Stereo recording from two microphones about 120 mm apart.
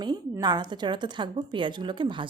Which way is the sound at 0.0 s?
35° right (ahead or behind).